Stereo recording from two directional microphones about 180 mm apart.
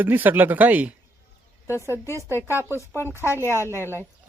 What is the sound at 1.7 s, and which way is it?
Speech, 15° left (ahead or behind).